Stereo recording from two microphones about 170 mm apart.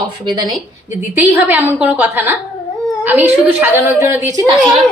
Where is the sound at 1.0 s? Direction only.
10° right (ahead or behind).